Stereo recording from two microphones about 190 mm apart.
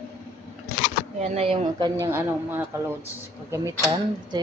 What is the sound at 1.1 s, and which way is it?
Speech, 35° right (ahead or behind).